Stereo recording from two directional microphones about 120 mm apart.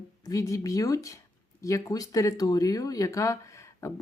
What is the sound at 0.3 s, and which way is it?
Speech, 25° left (ahead or behind).